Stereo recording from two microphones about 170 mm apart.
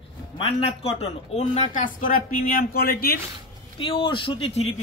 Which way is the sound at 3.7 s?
30° left (ahead or behind).